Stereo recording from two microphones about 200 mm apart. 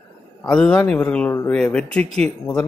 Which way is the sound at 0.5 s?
5° left (ahead or behind).